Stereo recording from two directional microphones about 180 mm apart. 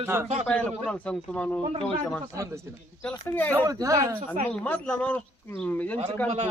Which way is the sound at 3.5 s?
20° right (ahead or behind).